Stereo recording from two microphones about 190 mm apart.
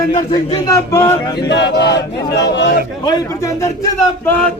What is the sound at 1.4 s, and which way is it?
Choir, 65° left (ahead or behind).